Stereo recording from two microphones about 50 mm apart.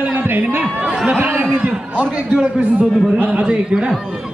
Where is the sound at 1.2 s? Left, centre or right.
Right.